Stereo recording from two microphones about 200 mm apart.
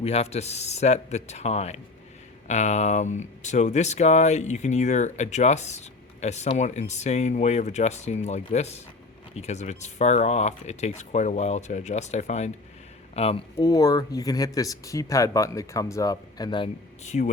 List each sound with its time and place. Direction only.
0.0 s speech: 30° left (ahead or behind)